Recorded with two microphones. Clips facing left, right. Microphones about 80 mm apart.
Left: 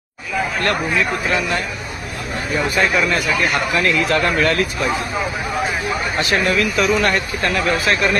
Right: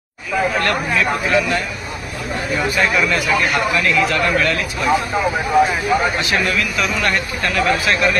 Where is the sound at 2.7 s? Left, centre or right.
Left.